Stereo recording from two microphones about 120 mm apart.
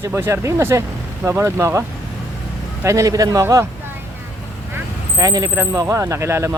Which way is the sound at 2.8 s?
25° right (ahead or behind).